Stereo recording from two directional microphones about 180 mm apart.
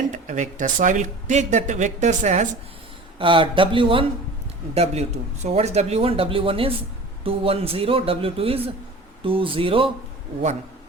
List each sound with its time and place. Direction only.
0.1 s speech: 45° right (ahead or behind)
3.2 s speech: 30° right (ahead or behind)